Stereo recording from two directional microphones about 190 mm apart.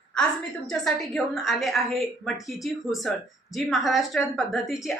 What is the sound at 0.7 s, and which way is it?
A woman's voice, centre (ahead or behind).